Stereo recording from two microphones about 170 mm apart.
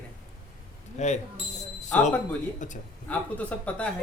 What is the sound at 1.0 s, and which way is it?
Speech, 40° left (ahead or behind).